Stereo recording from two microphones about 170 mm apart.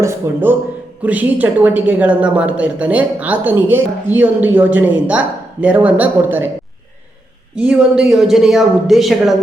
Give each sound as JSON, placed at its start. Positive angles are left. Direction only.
{"t": 0.0, "sound": "a woman's voice", "side_deg": -15}
{"t": 7.5, "sound": "speech", "side_deg": -5}